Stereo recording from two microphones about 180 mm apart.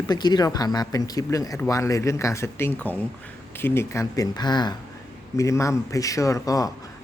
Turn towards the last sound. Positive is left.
turn(degrees=20)  # may be behind; listen again after turning